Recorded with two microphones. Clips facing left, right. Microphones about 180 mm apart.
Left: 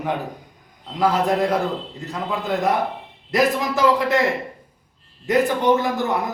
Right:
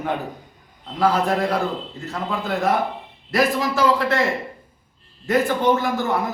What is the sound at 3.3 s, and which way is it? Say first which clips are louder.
Speech: even; 20° left (ahead or behind).